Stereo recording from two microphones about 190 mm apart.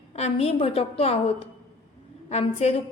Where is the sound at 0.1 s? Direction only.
35° left (ahead or behind).